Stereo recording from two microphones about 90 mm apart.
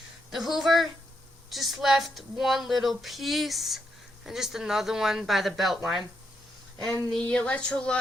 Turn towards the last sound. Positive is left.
turn(degrees=10)  # may be behind; listen again after turning